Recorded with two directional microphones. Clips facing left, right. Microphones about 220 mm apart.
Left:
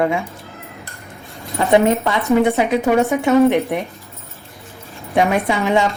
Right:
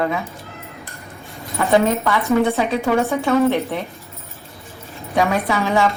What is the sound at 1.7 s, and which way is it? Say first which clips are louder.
A woman's voice: left 2 dB; 20° left (ahead or behind).